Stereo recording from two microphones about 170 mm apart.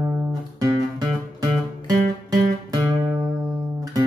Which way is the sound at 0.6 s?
20° right (ahead or behind).